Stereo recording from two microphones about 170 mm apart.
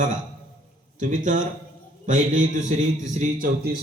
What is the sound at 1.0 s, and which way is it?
Speech, 50° right (ahead or behind).